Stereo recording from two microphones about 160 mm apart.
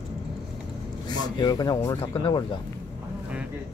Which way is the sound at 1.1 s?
25° left (ahead or behind).